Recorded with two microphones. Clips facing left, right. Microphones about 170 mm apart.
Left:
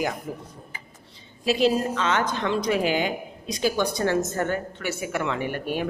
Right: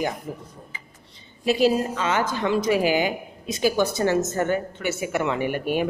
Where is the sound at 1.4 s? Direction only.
5° right (ahead or behind).